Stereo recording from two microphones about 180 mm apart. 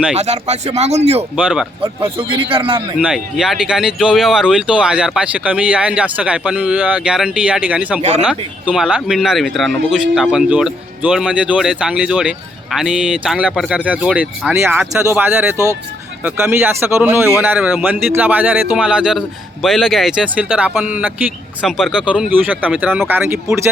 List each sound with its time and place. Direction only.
0.2 s speech: 40° right (ahead or behind)
1.4 s speech: 5° right (ahead or behind)
1.8 s a man's voice: 30° right (ahead or behind)
3.0 s speech: 5° right (ahead or behind)
15.5 s speech: 15° left (ahead or behind)
16.2 s speech: 15° right (ahead or behind)